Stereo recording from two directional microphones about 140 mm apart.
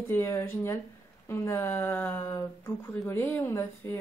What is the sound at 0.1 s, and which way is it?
Speech, 20° left (ahead or behind).